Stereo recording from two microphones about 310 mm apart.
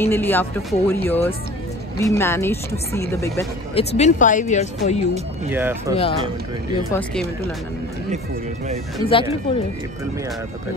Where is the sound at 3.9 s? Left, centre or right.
Left.